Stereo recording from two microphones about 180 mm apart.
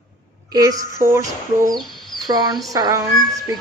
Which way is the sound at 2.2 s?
25° right (ahead or behind).